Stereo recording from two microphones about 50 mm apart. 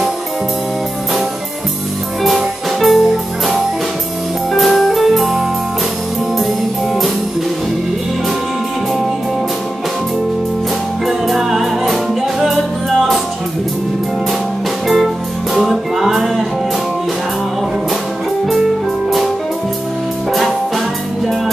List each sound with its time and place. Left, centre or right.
2.2 s music: centre
4.6 s music: centre
11.1 s music: centre
15.5 s music: centre